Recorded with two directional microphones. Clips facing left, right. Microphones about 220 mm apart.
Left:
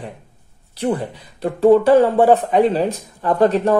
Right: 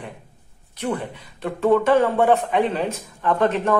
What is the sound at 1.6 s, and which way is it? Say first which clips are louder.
Speech: left 5 dB; 35° left (ahead or behind).